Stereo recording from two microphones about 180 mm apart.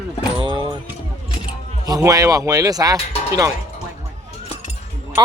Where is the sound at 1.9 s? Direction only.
20° right (ahead or behind).